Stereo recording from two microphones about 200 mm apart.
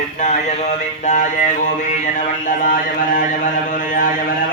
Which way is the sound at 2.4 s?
45° left (ahead or behind).